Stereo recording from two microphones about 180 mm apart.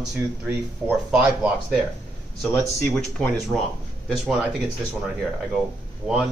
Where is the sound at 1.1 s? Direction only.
5° right (ahead or behind).